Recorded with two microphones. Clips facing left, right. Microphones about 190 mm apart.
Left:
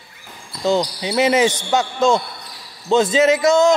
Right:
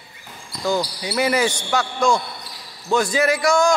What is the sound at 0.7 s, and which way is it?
A man's voice, 20° left (ahead or behind).